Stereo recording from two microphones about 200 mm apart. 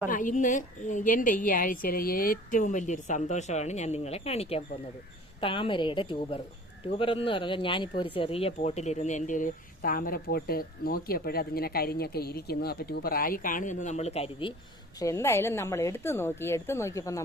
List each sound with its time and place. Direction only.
0.1 s a woman's voice: 40° left (ahead or behind)
14.9 s a woman's voice: 15° left (ahead or behind)